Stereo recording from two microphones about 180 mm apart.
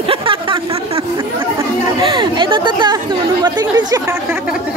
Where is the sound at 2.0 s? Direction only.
25° right (ahead or behind).